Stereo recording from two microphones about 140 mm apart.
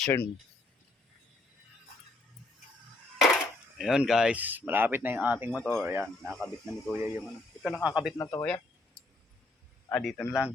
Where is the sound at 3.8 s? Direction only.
5° right (ahead or behind).